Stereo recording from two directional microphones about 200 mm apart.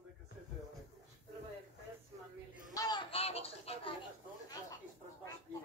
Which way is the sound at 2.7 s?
20° left (ahead or behind).